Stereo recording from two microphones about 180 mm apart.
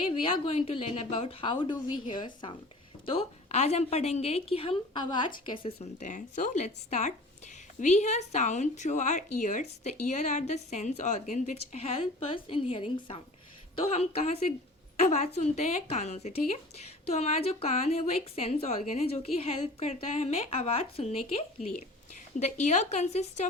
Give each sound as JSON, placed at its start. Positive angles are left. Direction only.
{"t": 0.0, "sound": "a woman's voice", "side_deg": 30}
{"t": 22.4, "sound": "speech", "side_deg": 40}